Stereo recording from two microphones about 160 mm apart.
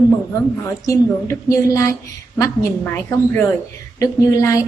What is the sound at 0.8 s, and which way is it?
A woman's voice, 20° left (ahead or behind).